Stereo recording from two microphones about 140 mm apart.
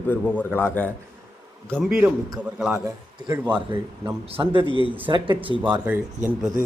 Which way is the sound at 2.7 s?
20° right (ahead or behind).